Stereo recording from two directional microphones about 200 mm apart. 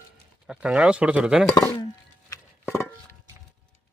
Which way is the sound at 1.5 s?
20° left (ahead or behind).